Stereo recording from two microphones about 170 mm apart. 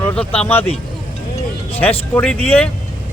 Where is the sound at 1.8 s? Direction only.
10° left (ahead or behind).